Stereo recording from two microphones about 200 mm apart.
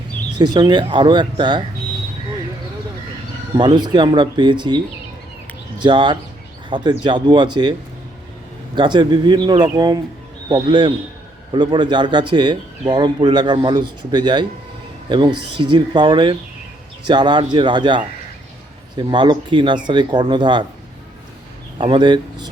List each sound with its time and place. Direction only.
0.3 s a man's voice: 20° right (ahead or behind)
3.5 s a man's voice: 20° right (ahead or behind)
5.8 s a man's voice: 25° right (ahead or behind)
8.7 s a man's voice: 25° right (ahead or behind)
21.8 s a man's voice: 25° right (ahead or behind)